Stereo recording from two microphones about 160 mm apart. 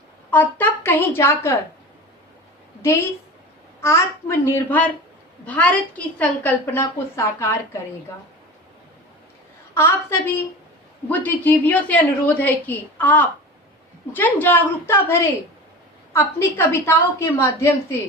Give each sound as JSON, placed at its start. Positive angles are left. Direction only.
{"t": 0.3, "sound": "a woman's voice", "side_deg": 10}
{"t": 3.8, "sound": "a woman's voice", "side_deg": 15}
{"t": 9.7, "sound": "a woman's voice", "side_deg": 15}